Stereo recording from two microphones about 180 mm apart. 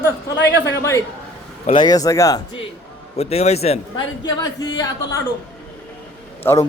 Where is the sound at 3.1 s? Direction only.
35° left (ahead or behind).